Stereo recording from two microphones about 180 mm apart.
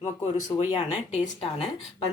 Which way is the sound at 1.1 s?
35° left (ahead or behind).